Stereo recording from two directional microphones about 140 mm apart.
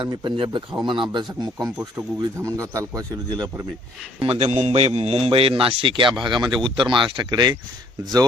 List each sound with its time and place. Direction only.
0.0 s a man's voice: 30° right (ahead or behind)
4.2 s a man's voice: 40° right (ahead or behind)